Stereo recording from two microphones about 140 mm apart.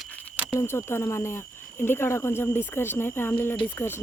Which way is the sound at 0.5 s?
20° left (ahead or behind).